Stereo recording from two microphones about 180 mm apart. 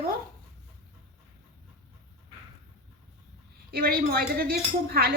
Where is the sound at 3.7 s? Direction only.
60° right (ahead or behind).